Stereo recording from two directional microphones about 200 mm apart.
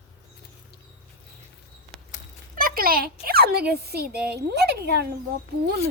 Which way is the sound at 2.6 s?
45° right (ahead or behind).